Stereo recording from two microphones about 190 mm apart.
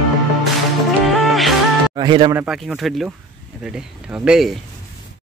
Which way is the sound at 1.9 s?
25° right (ahead or behind).